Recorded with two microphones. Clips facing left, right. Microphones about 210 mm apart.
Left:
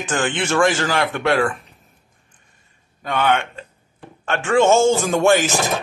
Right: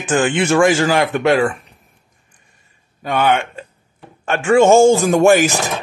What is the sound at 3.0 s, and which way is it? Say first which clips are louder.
A man's voice: right 3 dB; 10° right (ahead or behind).